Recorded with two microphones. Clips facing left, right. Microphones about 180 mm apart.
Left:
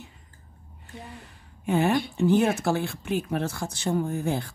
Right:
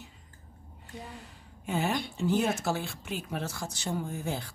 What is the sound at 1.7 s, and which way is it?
Speech, 60° left (ahead or behind).